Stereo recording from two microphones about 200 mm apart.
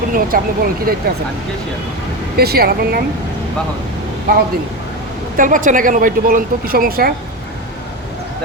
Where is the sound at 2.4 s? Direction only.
50° right (ahead or behind).